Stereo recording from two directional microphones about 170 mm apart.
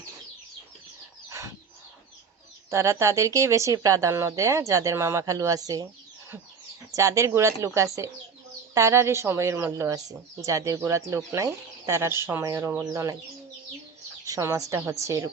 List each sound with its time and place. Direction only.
2.6 s speech: 15° right (ahead or behind)
6.9 s speech: 20° right (ahead or behind)
14.3 s speech: 15° right (ahead or behind)